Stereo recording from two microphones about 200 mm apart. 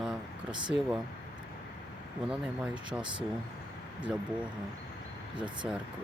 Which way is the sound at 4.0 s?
5° right (ahead or behind).